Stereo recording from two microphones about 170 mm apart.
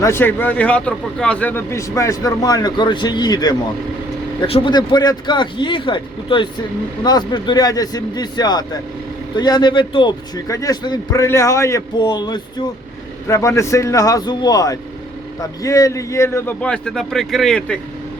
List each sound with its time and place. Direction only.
0.0 s a man's voice: 15° left (ahead or behind)